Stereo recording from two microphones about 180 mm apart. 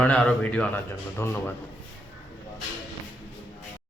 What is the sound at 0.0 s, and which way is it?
A man's voice, 5° left (ahead or behind).